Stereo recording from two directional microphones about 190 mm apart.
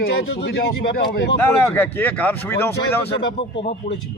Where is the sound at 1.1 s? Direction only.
60° left (ahead or behind).